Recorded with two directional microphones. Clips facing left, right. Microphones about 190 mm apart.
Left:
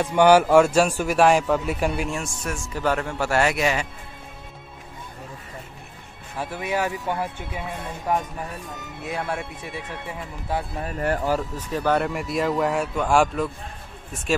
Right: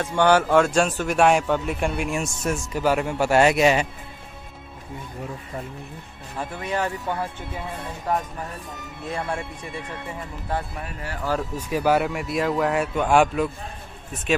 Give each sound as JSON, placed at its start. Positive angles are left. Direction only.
{"t": 0.0, "sound": "a man's voice", "side_deg": 10}
{"t": 2.0, "sound": "a man's voice", "side_deg": -20}
{"t": 2.8, "sound": "a man's voice", "side_deg": -10}
{"t": 6.3, "sound": "a man's voice", "side_deg": 5}
{"t": 11.5, "sound": "a man's voice", "side_deg": -10}